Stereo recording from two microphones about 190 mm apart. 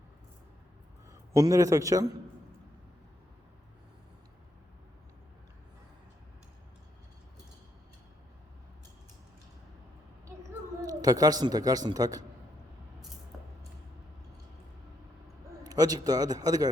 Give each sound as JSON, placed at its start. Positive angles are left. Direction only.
{"t": 1.4, "sound": "a man's voice", "side_deg": -15}
{"t": 10.8, "sound": "speech", "side_deg": -20}
{"t": 13.3, "sound": "a sound", "side_deg": 0}
{"t": 15.6, "sound": "a man's voice", "side_deg": -20}